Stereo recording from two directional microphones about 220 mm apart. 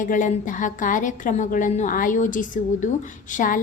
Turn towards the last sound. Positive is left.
turn(degrees=40)  # may be behind; listen again after turning